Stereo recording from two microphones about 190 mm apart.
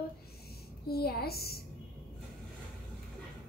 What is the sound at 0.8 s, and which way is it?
Speech, 55° left (ahead or behind).